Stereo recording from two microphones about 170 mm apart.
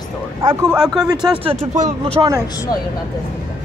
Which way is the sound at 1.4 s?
35° right (ahead or behind).